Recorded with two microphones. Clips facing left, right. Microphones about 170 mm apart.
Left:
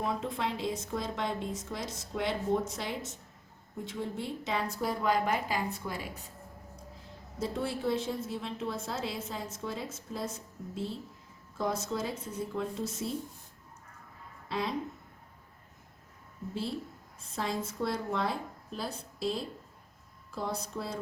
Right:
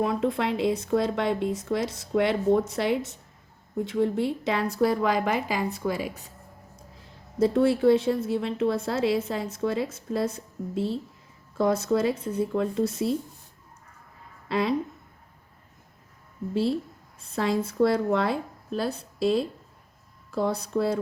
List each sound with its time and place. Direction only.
0.0 s a woman's voice: 70° right (ahead or behind)
7.3 s a woman's voice: 65° right (ahead or behind)
14.4 s a sound: 70° right (ahead or behind)
17.3 s a woman's voice: 70° right (ahead or behind)